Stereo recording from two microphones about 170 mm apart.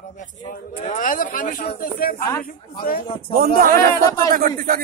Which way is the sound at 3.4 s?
60° right (ahead or behind).